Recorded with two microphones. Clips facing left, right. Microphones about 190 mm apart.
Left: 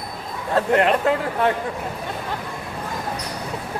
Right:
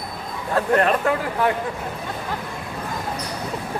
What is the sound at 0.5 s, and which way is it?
Speech, 20° left (ahead or behind).